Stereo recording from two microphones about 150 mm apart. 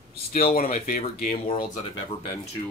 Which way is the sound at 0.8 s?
70° left (ahead or behind).